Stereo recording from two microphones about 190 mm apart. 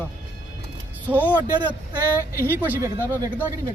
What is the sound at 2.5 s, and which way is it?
Speech, 10° right (ahead or behind).